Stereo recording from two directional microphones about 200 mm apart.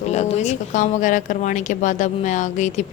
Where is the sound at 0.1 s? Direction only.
35° left (ahead or behind).